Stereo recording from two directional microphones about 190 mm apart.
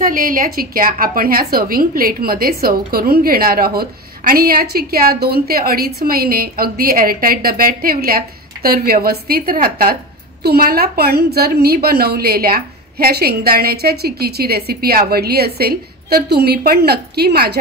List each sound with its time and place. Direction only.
0.0 s a woman's voice: 45° right (ahead or behind)